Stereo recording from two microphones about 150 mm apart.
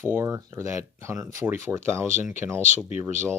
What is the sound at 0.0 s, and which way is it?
Speech, 20° right (ahead or behind).